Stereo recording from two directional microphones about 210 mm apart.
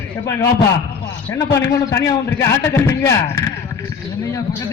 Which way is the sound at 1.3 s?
15° left (ahead or behind).